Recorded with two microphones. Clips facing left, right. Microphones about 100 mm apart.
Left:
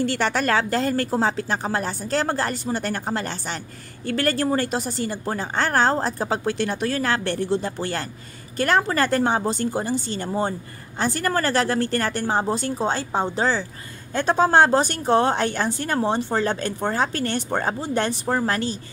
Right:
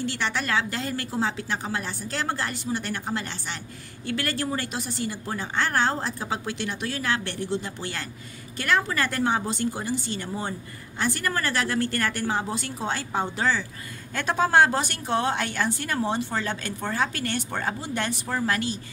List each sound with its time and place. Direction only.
0.0 s a woman's voice: 45° left (ahead or behind)